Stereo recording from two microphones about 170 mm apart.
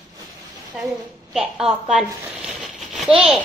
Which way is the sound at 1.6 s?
5° right (ahead or behind).